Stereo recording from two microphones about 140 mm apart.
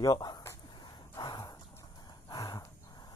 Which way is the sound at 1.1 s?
30° left (ahead or behind).